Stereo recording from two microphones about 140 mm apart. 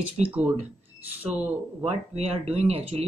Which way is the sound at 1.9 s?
50° right (ahead or behind).